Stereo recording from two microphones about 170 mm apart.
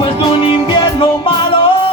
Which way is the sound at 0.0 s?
30° left (ahead or behind).